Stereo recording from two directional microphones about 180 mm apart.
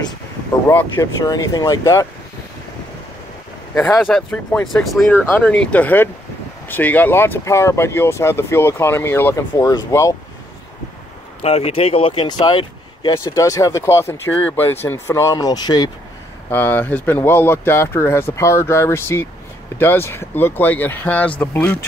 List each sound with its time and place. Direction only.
0.7 s speech: 15° left (ahead or behind)
4.0 s speech: 5° left (ahead or behind)
11.4 s speech: 35° left (ahead or behind)
16.4 s speech: 10° left (ahead or behind)